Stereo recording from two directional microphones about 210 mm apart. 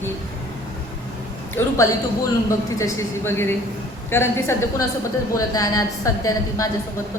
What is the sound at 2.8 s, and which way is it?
A woman's voice, 10° left (ahead or behind).